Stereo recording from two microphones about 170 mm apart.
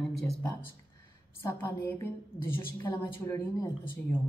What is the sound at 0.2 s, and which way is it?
A woman's voice, 20° left (ahead or behind).